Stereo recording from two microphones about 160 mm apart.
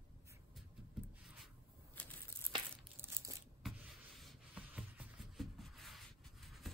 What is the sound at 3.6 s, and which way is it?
Rub, centre (ahead or behind).